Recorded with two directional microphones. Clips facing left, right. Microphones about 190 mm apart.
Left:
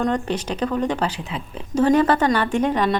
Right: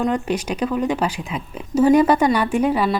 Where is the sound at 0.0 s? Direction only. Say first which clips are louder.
Right 1 dB; 10° right (ahead or behind).